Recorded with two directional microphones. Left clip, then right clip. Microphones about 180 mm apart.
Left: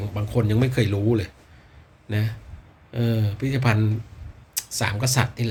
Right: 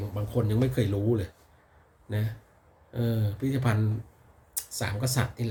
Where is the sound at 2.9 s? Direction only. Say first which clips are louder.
Left 5 dB; 15° right (ahead or behind).